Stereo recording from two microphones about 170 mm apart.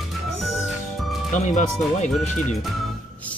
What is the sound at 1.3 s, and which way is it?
Speech, 45° left (ahead or behind).